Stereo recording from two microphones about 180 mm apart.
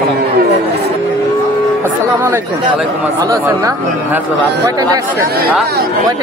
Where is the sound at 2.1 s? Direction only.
10° right (ahead or behind).